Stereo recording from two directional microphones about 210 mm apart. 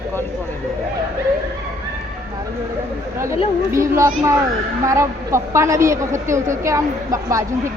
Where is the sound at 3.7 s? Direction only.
15° right (ahead or behind).